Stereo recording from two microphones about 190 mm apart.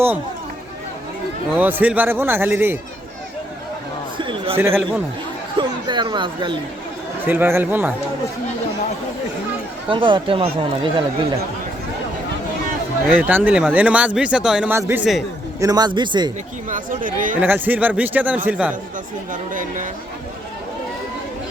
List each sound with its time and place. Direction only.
1.5 s speech: 10° right (ahead or behind)
4.2 s a sound: 25° right (ahead or behind)
4.5 s speech: 10° right (ahead or behind)
5.5 s speech: 25° right (ahead or behind)
7.3 s speech: 10° right (ahead or behind)
9.9 s speech: 25° right (ahead or behind)
13.1 s speech: 10° right (ahead or behind)
16.6 s speech: 45° right (ahead or behind)
17.4 s speech: 10° right (ahead or behind)
19.3 s speech: 45° right (ahead or behind)